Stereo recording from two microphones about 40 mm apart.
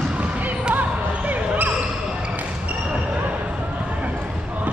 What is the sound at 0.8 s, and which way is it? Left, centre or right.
Basketball bounce, right.